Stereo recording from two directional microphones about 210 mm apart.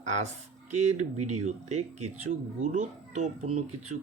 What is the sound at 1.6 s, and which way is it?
Speech, 90° right.